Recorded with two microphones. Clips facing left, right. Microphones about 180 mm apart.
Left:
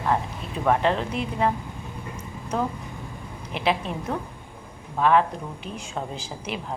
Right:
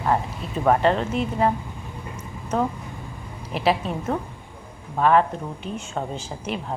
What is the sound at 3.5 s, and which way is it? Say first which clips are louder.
Speech: right 3 dB; centre (ahead or behind).